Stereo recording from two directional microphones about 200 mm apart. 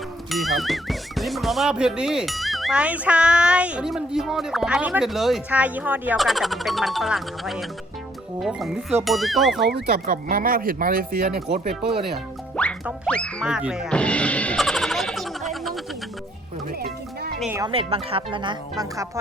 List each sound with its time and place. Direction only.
0.3 s speech: centre (ahead or behind)
9.9 s speech: 45° right (ahead or behind)
11.7 s speech: centre (ahead or behind)
12.1 s music: 5° left (ahead or behind)
17.7 s speech: 30° right (ahead or behind)